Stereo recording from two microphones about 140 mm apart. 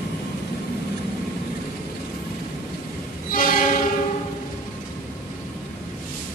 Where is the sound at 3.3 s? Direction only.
85° left.